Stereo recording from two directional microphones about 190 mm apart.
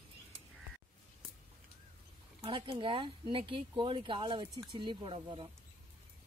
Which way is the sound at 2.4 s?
25° right (ahead or behind).